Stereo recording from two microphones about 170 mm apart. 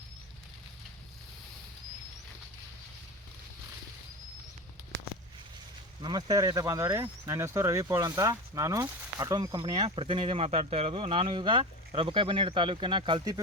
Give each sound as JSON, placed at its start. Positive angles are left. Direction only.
{"t": 6.0, "sound": "speech", "side_deg": -25}